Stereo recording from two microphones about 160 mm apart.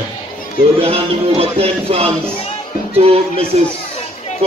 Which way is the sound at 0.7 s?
40° right (ahead or behind).